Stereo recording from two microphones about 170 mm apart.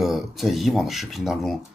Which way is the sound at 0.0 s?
Centre (ahead or behind).